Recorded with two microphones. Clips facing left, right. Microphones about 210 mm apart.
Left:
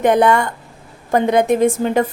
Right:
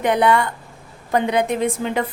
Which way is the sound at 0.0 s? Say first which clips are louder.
Left 4 dB; 45° left (ahead or behind).